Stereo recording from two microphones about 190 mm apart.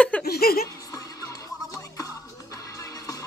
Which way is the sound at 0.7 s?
15° left (ahead or behind).